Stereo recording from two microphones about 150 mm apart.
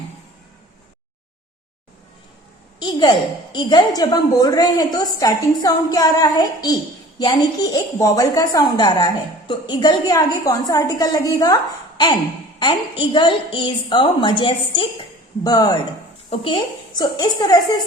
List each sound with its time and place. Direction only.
2.7 s a woman's voice: 30° left (ahead or behind)